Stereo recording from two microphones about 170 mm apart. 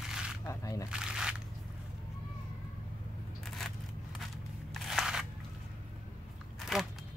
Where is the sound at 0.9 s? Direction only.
5° right (ahead or behind).